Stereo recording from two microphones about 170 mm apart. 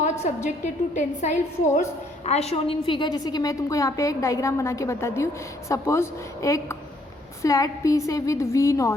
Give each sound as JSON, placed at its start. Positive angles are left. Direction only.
{"t": 0.0, "sound": "a woman's voice", "side_deg": 45}